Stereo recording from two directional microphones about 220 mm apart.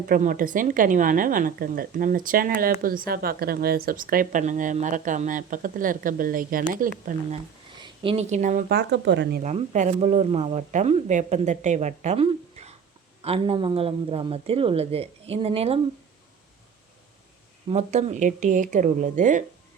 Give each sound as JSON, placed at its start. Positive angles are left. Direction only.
{"t": 0.1, "sound": "speech", "side_deg": -40}
{"t": 7.8, "sound": "a woman's voice", "side_deg": -25}
{"t": 8.7, "sound": "speech", "side_deg": -50}
{"t": 9.4, "sound": "speech", "side_deg": -35}
{"t": 17.7, "sound": "speech", "side_deg": -30}